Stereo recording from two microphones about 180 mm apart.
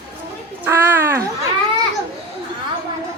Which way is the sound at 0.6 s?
10° right (ahead or behind).